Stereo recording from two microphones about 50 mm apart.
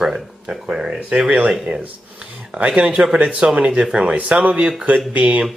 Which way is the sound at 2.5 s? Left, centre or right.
Right.